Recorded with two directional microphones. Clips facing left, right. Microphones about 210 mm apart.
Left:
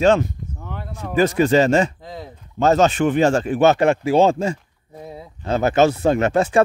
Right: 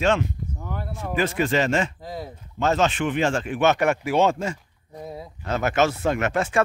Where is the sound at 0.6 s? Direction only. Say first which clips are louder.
Left 1 dB; 5° right (ahead or behind).